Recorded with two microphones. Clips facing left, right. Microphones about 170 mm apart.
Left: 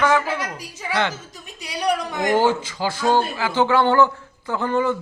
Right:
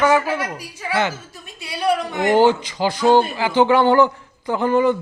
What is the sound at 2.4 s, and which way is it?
Speech, 20° right (ahead or behind).